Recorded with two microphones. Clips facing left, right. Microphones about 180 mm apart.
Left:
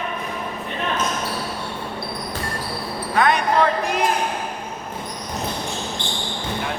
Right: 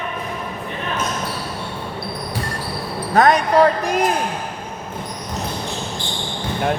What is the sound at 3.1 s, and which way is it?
Speech, 40° right (ahead or behind).